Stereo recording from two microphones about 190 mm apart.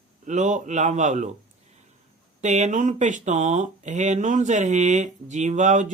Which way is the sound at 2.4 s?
40° right (ahead or behind).